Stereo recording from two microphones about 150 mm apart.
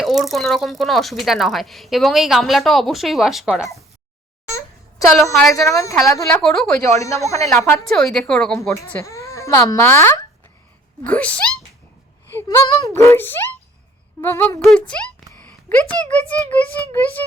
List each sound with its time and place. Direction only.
0.0 s speech: centre (ahead or behind)
4.4 s a sound: 20° left (ahead or behind)
5.1 s speech: centre (ahead or behind)
5.6 s a woman's voice: 20° left (ahead or behind)
6.2 s speech: 5° left (ahead or behind)
7.0 s a woman's voice: 20° left (ahead or behind)
7.9 s speech: 5° left (ahead or behind)
8.7 s a woman's voice: 20° left (ahead or behind)
14.6 s speech: 5° left (ahead or behind)